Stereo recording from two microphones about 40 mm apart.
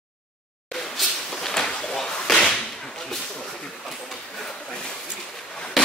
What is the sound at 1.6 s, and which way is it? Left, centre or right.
Whip, centre.